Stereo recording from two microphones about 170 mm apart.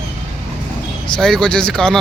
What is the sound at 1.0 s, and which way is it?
Speech, 5° left (ahead or behind).